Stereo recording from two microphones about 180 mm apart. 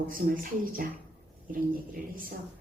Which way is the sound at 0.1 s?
50° right (ahead or behind).